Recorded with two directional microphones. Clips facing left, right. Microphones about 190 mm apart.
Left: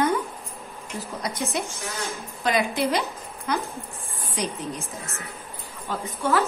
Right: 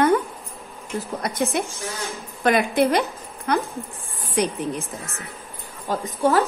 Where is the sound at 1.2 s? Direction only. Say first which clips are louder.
Right 3 dB; 55° right (ahead or behind).